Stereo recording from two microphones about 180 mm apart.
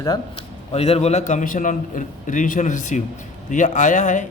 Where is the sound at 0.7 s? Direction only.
35° left (ahead or behind).